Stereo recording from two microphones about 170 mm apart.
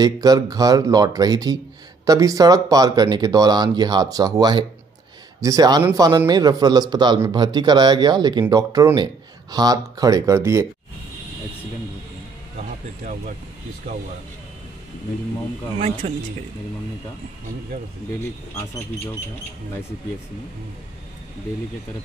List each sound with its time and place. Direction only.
0.0 s a man's voice: 20° right (ahead or behind)
16.0 s speech: 35° right (ahead or behind)